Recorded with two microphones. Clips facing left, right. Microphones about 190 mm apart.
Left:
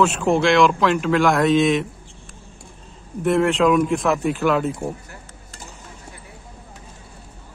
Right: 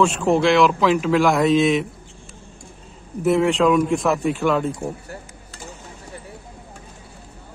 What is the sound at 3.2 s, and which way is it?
Speech, centre (ahead or behind).